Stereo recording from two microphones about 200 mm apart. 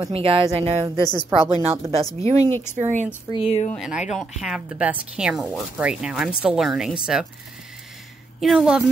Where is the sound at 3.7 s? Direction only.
5° right (ahead or behind).